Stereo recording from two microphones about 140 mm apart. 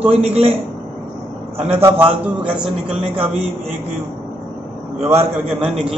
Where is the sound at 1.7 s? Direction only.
15° right (ahead or behind).